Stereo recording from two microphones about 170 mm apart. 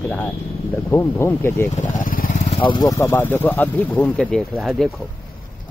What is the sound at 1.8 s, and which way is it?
Vehicle, 55° left (ahead or behind).